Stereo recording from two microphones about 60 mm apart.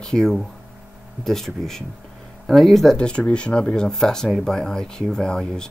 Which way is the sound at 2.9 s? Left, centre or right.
Centre.